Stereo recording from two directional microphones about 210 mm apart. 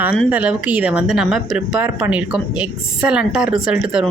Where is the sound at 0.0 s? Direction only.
5° right (ahead or behind).